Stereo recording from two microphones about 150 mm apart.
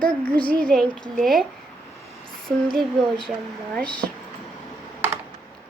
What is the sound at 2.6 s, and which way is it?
Speech, 5° left (ahead or behind).